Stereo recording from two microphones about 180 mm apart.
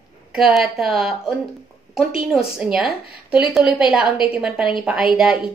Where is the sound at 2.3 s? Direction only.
5° right (ahead or behind).